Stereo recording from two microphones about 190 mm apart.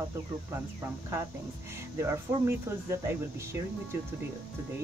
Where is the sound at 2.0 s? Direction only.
15° right (ahead or behind).